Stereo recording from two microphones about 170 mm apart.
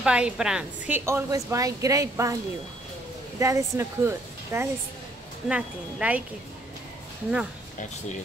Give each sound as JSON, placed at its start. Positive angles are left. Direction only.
{"t": 0.0, "sound": "a woman's voice", "side_deg": -5}
{"t": 3.3, "sound": "a woman's voice", "side_deg": -20}